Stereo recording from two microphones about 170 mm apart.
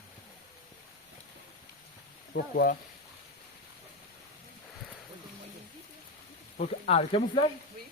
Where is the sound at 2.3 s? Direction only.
65° left (ahead or behind).